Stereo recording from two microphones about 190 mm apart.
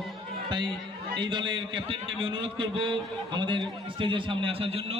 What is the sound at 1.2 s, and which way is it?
A man's voice, 25° right (ahead or behind).